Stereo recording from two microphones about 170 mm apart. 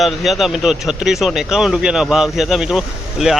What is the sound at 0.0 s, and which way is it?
Speech, centre (ahead or behind).